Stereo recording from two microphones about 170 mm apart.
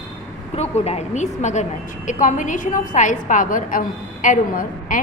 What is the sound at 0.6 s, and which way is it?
A woman's voice, 40° left (ahead or behind).